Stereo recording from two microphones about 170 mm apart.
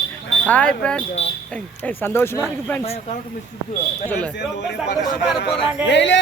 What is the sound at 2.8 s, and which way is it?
Speech, 35° left (ahead or behind).